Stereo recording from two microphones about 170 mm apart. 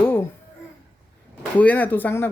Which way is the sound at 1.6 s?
10° left (ahead or behind).